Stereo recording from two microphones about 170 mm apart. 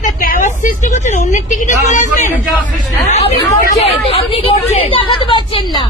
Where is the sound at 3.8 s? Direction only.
35° left (ahead or behind).